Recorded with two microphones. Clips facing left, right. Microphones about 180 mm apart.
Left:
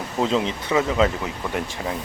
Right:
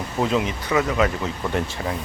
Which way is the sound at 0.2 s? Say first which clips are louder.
Even; 25° left (ahead or behind).